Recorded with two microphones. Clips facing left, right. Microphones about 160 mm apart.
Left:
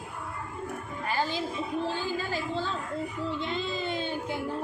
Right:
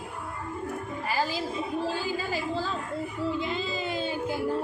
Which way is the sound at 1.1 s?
5° right (ahead or behind).